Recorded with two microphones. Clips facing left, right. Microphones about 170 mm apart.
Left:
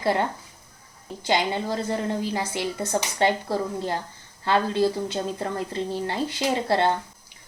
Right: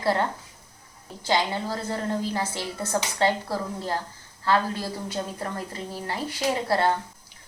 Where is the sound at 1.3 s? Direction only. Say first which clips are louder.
Left 1 dB; 20° left (ahead or behind).